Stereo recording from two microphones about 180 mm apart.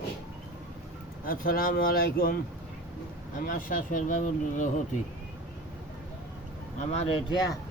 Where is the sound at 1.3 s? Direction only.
55° left (ahead or behind).